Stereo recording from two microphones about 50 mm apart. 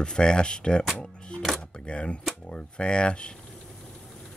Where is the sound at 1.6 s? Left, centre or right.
Centre.